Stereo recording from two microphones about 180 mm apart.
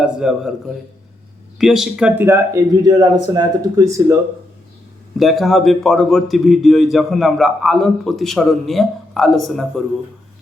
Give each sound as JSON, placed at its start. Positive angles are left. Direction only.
{"t": 0.0, "sound": "a man's voice", "side_deg": -5}
{"t": 1.5, "sound": "speech", "side_deg": 0}
{"t": 5.2, "sound": "a man's voice", "side_deg": 0}